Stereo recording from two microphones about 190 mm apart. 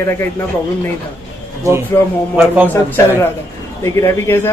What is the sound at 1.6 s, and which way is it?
Speech, 15° right (ahead or behind).